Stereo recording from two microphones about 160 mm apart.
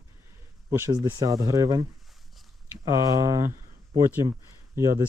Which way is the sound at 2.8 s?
20° right (ahead or behind).